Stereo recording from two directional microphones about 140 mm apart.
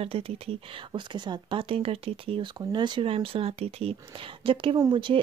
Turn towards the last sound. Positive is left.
turn(degrees=-35)  # may be behind; listen again after turning